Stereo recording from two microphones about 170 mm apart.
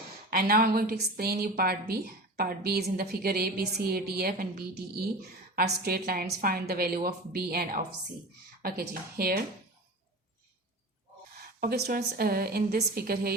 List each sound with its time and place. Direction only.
0.3 s a woman's voice: 60° right (ahead or behind)
11.3 s a woman's voice: 60° right (ahead or behind)